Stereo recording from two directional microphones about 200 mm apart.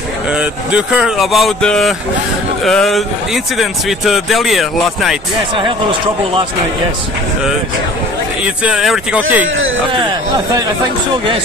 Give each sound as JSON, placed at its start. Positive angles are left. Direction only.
{"t": 0.3, "sound": "speech", "side_deg": -5}
{"t": 5.6, "sound": "speech", "side_deg": -25}
{"t": 8.6, "sound": "speech", "side_deg": 0}